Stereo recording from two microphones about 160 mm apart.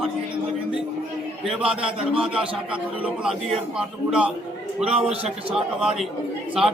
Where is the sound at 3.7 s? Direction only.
5° right (ahead or behind).